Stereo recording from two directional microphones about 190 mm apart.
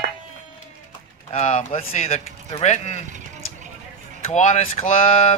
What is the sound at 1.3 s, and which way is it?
Speech, 35° left (ahead or behind).